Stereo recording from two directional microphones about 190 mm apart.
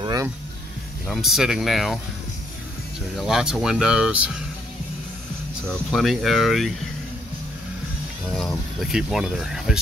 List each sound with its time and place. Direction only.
0.0 s vehicle: 20° right (ahead or behind)
1.0 s speech: centre (ahead or behind)
3.2 s speech: centre (ahead or behind)
5.7 s speech: centre (ahead or behind)
8.8 s speech: centre (ahead or behind)